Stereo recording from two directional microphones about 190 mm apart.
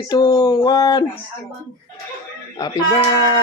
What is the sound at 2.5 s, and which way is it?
Speech, 20° left (ahead or behind).